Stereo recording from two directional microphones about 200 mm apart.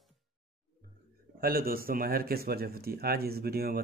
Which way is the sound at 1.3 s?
50° right (ahead or behind).